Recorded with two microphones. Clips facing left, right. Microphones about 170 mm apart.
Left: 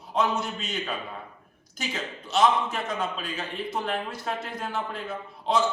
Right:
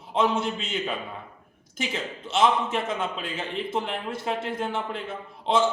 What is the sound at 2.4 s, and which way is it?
Speech, 25° right (ahead or behind).